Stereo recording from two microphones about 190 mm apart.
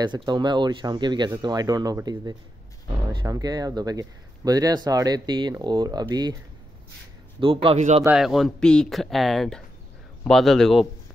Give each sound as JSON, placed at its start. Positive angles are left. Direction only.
{"t": 0.0, "sound": "speech", "side_deg": -25}
{"t": 7.3, "sound": "speech", "side_deg": -30}
{"t": 8.0, "sound": "speech", "side_deg": -5}